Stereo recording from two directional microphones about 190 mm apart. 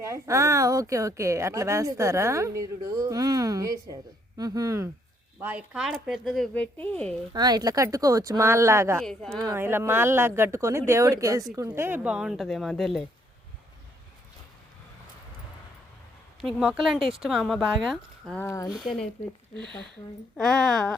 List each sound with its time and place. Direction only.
0.1 s a woman's voice: 15° right (ahead or behind); by 7.2 s 5° left (ahead or behind)
7.3 s a woman's voice: 20° right (ahead or behind)
9.0 s speech: centre (ahead or behind)
9.4 s a woman's voice: 15° right (ahead or behind); by 13.1 s centre (ahead or behind)
16.4 s speech: centre (ahead or behind)
18.4 s speech: 15° left (ahead or behind)
20.3 s speech: 5° left (ahead or behind)